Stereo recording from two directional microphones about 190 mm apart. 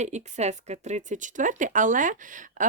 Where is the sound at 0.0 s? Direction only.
35° right (ahead or behind).